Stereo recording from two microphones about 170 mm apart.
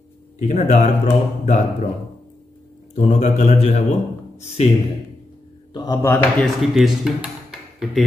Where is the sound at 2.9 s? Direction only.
40° left (ahead or behind).